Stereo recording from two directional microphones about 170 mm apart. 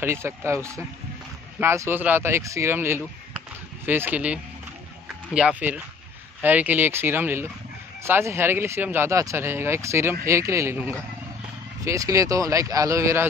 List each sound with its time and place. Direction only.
0.0 s speech: 15° right (ahead or behind)
5.0 s a sound: 5° right (ahead or behind)
6.4 s speech: 10° right (ahead or behind)